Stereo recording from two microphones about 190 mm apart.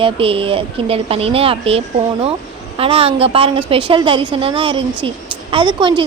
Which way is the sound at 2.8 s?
30° right (ahead or behind).